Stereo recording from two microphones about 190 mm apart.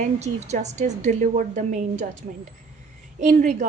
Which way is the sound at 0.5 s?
35° right (ahead or behind).